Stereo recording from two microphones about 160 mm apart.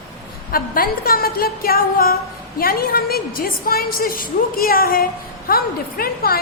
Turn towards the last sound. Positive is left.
turn(degrees=70)  # may be behind; listen again after turning